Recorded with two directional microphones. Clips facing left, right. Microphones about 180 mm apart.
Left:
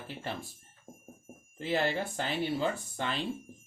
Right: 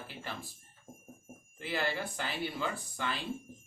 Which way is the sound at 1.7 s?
25° left (ahead or behind).